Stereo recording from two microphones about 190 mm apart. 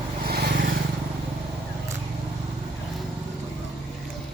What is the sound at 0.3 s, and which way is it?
Vehicle, 55° right (ahead or behind).